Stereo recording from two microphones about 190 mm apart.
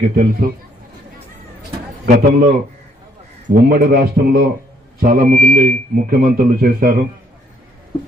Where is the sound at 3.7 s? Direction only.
55° right (ahead or behind).